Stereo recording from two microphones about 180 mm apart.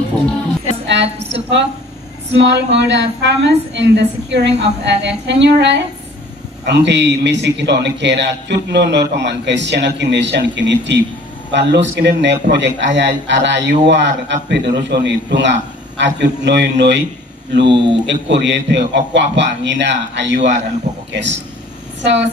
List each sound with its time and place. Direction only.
1.3 s a sound: 75° right (ahead or behind)
2.3 s a man's voice: 75° right (ahead or behind)
22.0 s a man's voice: 75° right (ahead or behind)